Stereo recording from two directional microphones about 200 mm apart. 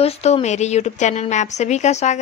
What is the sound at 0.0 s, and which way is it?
A woman's voice, 30° left (ahead or behind).